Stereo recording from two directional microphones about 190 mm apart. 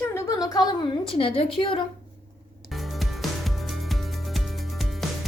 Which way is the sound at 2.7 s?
Centre (ahead or behind).